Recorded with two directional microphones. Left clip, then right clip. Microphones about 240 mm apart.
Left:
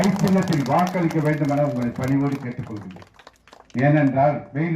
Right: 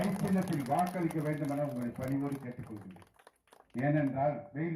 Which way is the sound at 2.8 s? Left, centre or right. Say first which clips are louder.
Left 13 dB; right.